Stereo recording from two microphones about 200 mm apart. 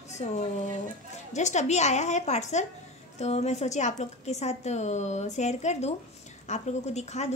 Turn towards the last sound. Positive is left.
turn(degrees=35)  # may be behind; listen again after turning